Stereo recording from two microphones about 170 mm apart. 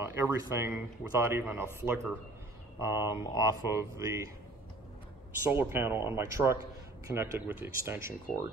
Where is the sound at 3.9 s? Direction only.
15° right (ahead or behind).